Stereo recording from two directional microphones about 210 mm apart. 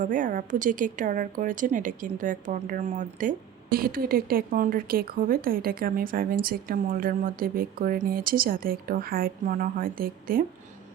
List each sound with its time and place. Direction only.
0.0 s a woman's voice: 40° right (ahead or behind)